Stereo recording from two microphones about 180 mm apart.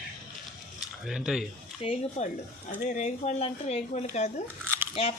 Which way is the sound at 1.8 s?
30° left (ahead or behind).